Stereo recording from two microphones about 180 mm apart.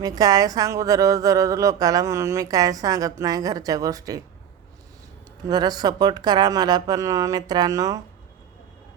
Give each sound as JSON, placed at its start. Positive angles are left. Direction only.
{"t": 0.0, "sound": "speech", "side_deg": -20}
{"t": 5.5, "sound": "speech", "side_deg": -20}